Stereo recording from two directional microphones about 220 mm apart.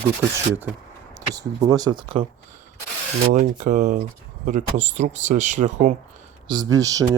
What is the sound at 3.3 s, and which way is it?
Speech, 35° right (ahead or behind).